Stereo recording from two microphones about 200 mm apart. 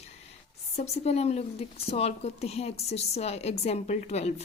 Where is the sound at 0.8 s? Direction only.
30° left (ahead or behind).